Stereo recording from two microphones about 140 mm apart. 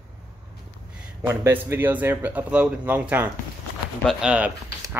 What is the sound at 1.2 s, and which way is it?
Speech, 15° right (ahead or behind).